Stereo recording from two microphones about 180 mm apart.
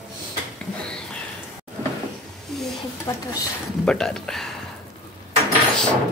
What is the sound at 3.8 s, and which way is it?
Speech, 5° left (ahead or behind).